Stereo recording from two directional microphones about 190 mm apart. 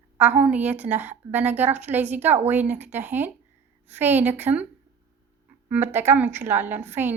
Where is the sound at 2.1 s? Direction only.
10° right (ahead or behind).